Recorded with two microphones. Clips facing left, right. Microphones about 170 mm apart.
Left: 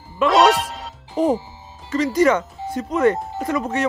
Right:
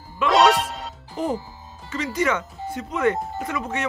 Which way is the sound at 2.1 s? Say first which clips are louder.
Left 6 dB; 40° left (ahead or behind).